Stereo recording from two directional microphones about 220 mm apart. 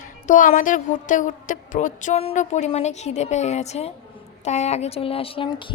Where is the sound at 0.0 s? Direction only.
35° left (ahead or behind).